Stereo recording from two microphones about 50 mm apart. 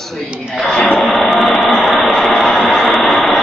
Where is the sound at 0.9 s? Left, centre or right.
Centre.